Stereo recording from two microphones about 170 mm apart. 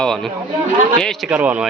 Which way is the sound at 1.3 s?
10° right (ahead or behind).